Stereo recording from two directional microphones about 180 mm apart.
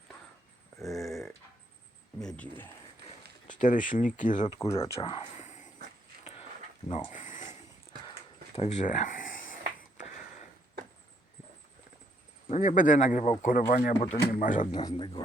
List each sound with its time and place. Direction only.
0.8 s a sound: centre (ahead or behind)
2.1 s speech: 5° left (ahead or behind)
3.5 s speech: 45° left (ahead or behind)
4.4 s speech: 25° left (ahead or behind)
5.4 s dog: 40° left (ahead or behind)
6.8 s speech: 30° left (ahead or behind)
7.1 s a sound: 45° left (ahead or behind)
8.5 s a sound: 40° left (ahead or behind)
12.5 s speech: 45° left (ahead or behind)
14.7 s speech: 25° left (ahead or behind)